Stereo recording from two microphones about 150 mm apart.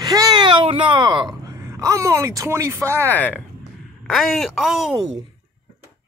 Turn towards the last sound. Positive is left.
turn(degrees=0)  # may be behind; listen again after turning